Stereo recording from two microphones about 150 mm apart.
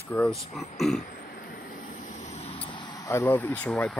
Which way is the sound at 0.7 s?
Centre (ahead or behind).